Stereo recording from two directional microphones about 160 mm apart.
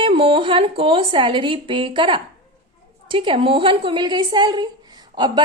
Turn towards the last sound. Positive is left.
turn(degrees=-30)  # may be behind; listen again after turning